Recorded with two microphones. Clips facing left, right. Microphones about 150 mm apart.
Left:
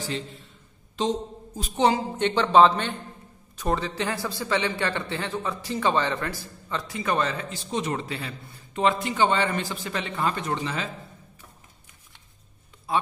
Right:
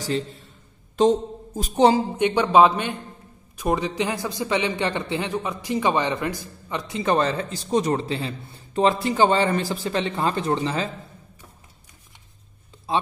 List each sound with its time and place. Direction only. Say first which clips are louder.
0.9 s a man's voice: right 8 dB; 50° right (ahead or behind)
2.1 s a man's voice: right 2 dB; 10° right (ahead or behind); by 10.9 s 35° right (ahead or behind)
12.9 s speech: right 2 dB; 25° right (ahead or behind)